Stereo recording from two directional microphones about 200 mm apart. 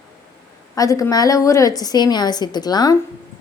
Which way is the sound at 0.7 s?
15° left (ahead or behind).